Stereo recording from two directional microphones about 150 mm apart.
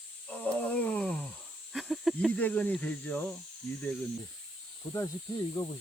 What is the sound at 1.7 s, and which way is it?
Snake, centre (ahead or behind).